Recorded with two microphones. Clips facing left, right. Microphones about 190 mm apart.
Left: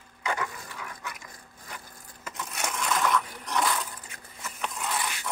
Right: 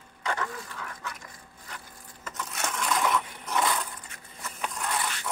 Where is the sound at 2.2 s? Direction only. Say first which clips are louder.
Even; 15° left (ahead or behind).